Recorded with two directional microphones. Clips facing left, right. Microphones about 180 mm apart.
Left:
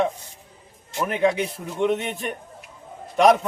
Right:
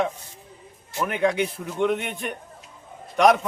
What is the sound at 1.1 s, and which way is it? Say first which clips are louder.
A man's voice: left 1 dB; centre (ahead or behind).